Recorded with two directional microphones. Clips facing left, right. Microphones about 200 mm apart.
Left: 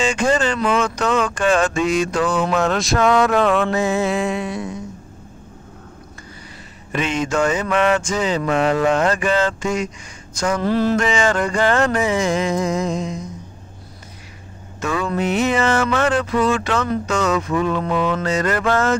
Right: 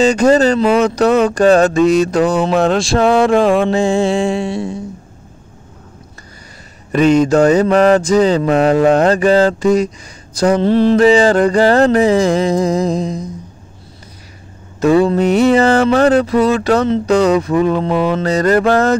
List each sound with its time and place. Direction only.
0.0 s music: 40° right (ahead or behind)
2.4 s a sound: 30° right (ahead or behind)
6.9 s music: 40° right (ahead or behind)
14.8 s music: 35° right (ahead or behind)